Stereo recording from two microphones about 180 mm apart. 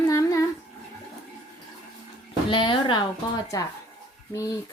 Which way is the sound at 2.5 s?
25° left (ahead or behind).